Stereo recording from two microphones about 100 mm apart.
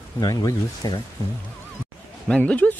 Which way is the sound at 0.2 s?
40° left (ahead or behind).